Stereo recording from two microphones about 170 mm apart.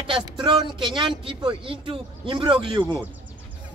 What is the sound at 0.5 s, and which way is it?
Speech, 30° right (ahead or behind).